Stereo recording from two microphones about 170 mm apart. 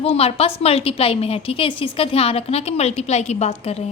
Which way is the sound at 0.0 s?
35° left (ahead or behind).